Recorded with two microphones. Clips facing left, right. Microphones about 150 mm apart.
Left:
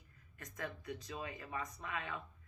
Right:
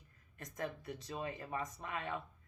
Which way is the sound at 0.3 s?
40° right (ahead or behind).